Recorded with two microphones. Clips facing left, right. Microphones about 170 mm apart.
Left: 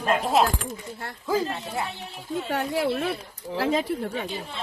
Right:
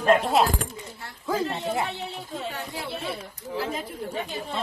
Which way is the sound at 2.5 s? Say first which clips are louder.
Left 9 dB; 70° left (ahead or behind).